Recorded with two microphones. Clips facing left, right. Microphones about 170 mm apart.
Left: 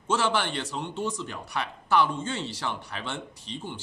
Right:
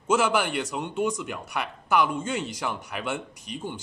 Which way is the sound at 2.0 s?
30° left (ahead or behind).